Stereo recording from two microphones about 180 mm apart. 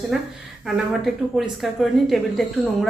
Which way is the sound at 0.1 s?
Centre (ahead or behind).